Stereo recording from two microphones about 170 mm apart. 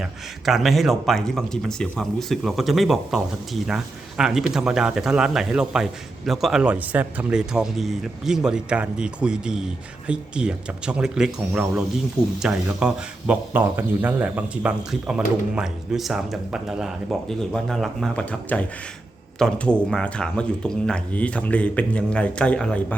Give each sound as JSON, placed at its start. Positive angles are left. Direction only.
{"t": 0.0, "sound": "a man's voice", "side_deg": 0}